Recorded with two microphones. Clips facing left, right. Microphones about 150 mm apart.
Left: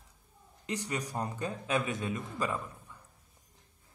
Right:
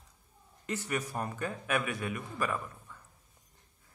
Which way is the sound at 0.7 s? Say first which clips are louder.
Right 1 dB; 15° left (ahead or behind).